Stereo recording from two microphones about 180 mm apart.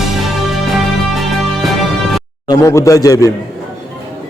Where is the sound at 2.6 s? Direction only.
15° left (ahead or behind).